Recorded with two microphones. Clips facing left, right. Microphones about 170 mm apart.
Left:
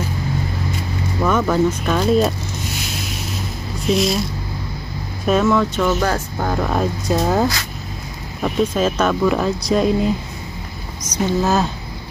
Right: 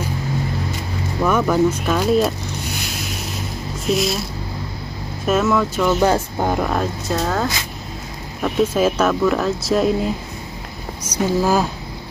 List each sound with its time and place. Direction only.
1.2 s speech: 5° right (ahead or behind)
3.8 s speech: centre (ahead or behind)
5.2 s speech: 5° right (ahead or behind)
5.9 s speech: 20° right (ahead or behind)
6.6 s speech: centre (ahead or behind)
7.1 s speech: 15° left (ahead or behind)
8.4 s speech: 5° left (ahead or behind)
8.7 s speech: 10° right (ahead or behind)